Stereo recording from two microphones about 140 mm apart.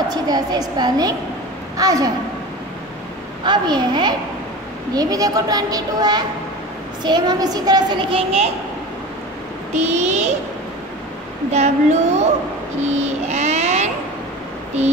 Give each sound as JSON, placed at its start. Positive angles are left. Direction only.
{"t": 0.1, "sound": "a child's voice", "side_deg": -30}
{"t": 3.4, "sound": "a child's voice", "side_deg": -30}
{"t": 9.8, "sound": "a child's voice", "side_deg": -55}
{"t": 11.5, "sound": "speech", "side_deg": -55}
{"t": 12.8, "sound": "a sound", "side_deg": -55}